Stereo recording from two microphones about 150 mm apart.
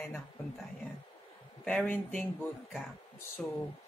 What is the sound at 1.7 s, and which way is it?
Speech, 5° left (ahead or behind).